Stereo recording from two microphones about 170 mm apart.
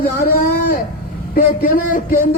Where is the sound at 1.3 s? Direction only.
55° left (ahead or behind).